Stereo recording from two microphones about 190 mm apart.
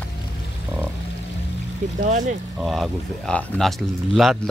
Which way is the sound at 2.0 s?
40° right (ahead or behind).